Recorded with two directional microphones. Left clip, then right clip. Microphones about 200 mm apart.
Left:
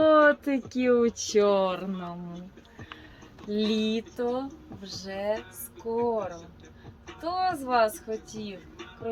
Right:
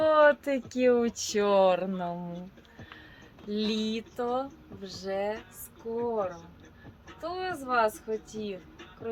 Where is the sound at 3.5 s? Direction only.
35° right (ahead or behind).